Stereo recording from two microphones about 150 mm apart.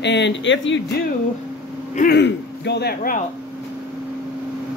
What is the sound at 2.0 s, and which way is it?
Speech, 90° left.